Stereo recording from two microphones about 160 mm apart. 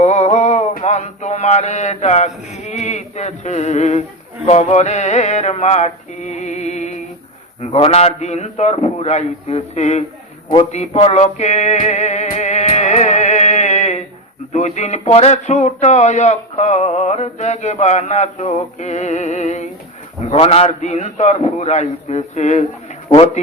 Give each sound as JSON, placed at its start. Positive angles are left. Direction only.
{"t": 0.0, "sound": "a sound", "side_deg": 45}
{"t": 0.7, "sound": "mantra", "side_deg": 45}
{"t": 4.4, "sound": "male singing", "side_deg": 40}
{"t": 7.6, "sound": "speech", "side_deg": 40}
{"t": 10.7, "sound": "music", "side_deg": 45}
{"t": 14.5, "sound": "speech", "side_deg": 45}
{"t": 23.0, "sound": "a man's voice", "side_deg": 30}